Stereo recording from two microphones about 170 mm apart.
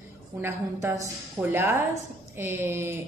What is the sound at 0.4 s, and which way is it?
Speech, 15° right (ahead or behind).